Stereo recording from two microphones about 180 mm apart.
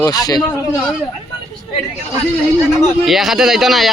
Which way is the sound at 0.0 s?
20° left (ahead or behind).